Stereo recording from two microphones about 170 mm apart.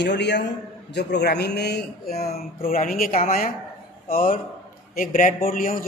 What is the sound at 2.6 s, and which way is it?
A man's voice, 55° left (ahead or behind).